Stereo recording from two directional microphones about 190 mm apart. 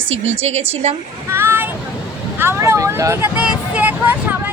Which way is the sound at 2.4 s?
15° right (ahead or behind).